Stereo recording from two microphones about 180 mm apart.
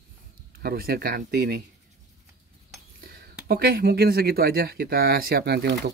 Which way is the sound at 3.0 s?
55° right (ahead or behind).